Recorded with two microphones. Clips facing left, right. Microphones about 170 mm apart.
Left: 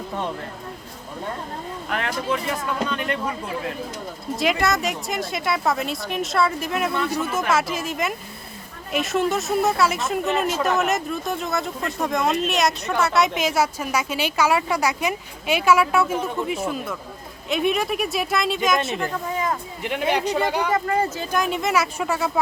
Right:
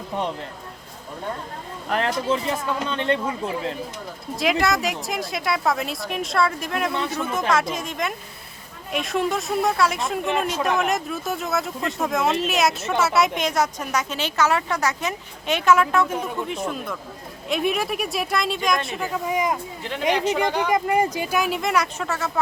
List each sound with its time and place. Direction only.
1.9 s speech: 30° right (ahead or behind)
4.4 s speech: centre (ahead or behind)